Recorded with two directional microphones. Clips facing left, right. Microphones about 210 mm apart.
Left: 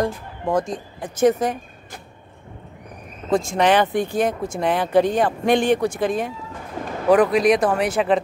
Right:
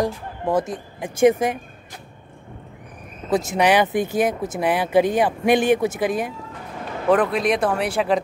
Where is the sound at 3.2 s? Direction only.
5° right (ahead or behind).